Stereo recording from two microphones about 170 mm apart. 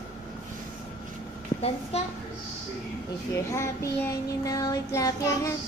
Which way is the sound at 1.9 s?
35° left (ahead or behind).